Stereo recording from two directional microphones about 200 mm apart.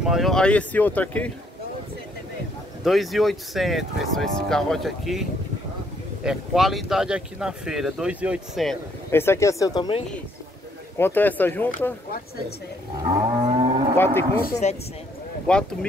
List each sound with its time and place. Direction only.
0.0 s speech: centre (ahead or behind)
2.8 s speech: centre (ahead or behind)
6.2 s speech: centre (ahead or behind)
9.1 s speech: 10° left (ahead or behind)
11.0 s speech: 10° left (ahead or behind)
13.5 s livestock: 30° right (ahead or behind)
13.9 s speech: 10° left (ahead or behind)
14.6 s speech: 35° left (ahead or behind)
15.5 s speech: 5° left (ahead or behind)